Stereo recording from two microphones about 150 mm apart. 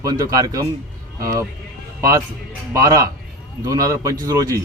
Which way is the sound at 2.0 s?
20° right (ahead or behind).